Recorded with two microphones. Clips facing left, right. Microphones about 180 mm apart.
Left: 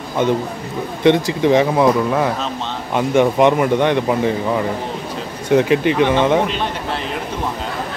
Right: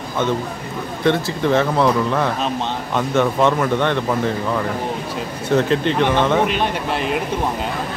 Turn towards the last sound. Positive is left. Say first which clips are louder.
# right 2 dB
turn(degrees=-15)  # may be behind; listen again after turning